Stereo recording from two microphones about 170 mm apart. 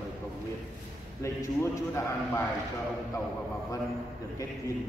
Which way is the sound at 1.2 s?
15° left (ahead or behind).